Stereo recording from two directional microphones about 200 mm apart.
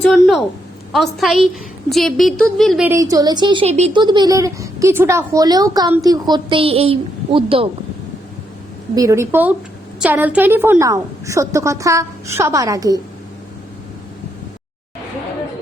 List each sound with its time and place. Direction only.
0.0 s a woman's voice: centre (ahead or behind); by 7.7 s 30° right (ahead or behind)
9.0 s a woman's voice: 15° right (ahead or behind)